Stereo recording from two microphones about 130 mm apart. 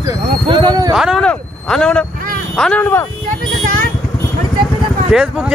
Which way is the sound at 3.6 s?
90° right.